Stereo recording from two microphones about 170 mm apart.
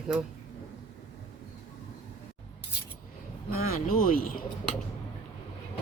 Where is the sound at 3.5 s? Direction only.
55° left (ahead or behind).